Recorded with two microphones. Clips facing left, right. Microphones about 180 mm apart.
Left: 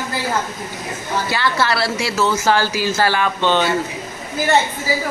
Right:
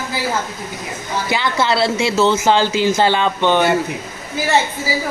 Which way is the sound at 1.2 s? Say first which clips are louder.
Right 2 dB; 20° right (ahead or behind).